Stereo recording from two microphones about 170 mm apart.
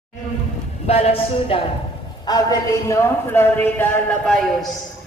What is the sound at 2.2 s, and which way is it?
A man's voice, 20° left (ahead or behind).